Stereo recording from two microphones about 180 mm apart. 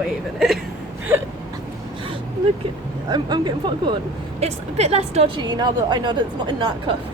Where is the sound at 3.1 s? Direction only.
25° right (ahead or behind).